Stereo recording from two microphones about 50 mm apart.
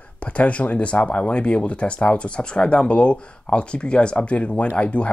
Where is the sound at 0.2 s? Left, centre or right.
Left.